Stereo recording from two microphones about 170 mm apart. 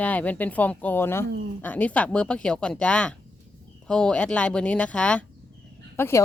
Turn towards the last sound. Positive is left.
turn(degrees=15)  # may be behind; listen again after turning